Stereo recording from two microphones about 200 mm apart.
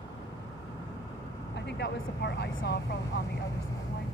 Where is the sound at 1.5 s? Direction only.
60° left (ahead or behind).